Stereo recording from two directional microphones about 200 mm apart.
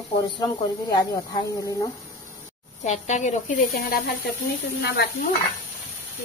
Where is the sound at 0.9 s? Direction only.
20° left (ahead or behind).